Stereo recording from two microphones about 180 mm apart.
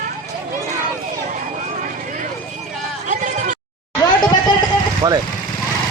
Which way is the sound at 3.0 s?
45° right (ahead or behind).